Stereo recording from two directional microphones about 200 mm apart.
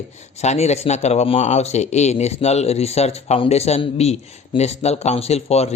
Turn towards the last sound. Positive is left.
turn(degrees=30)  # may be behind; listen again after turning